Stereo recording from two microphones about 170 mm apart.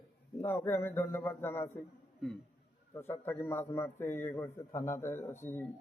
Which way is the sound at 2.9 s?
15° left (ahead or behind).